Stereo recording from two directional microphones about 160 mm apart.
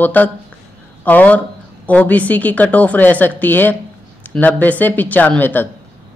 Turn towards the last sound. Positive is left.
turn(degrees=10)  # may be behind; listen again after turning